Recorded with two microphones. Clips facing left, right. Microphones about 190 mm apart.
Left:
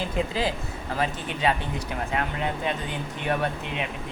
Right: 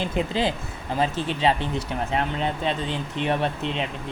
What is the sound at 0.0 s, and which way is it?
Speech, 25° right (ahead or behind).